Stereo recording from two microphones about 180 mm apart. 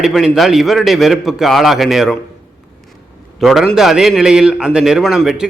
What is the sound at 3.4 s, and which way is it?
A man's voice, centre (ahead or behind).